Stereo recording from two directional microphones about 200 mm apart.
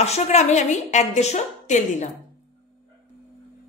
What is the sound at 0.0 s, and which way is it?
A woman's voice, 35° left (ahead or behind).